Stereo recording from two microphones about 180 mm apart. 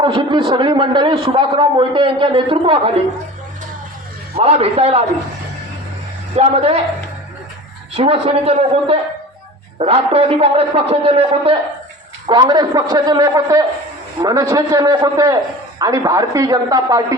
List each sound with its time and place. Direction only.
0.0 s a man's voice: 25° right (ahead or behind)
4.4 s a man's voice: 35° right (ahead or behind)
6.3 s a man's voice: 35° right (ahead or behind)
7.9 s a man's voice: 30° right (ahead or behind)